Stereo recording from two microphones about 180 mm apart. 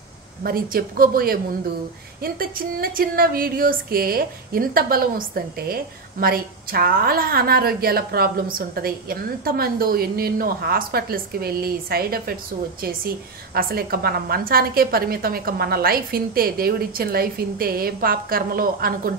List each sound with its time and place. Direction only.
0.4 s speech: 55° right (ahead or behind)
13.6 s speech: 55° right (ahead or behind)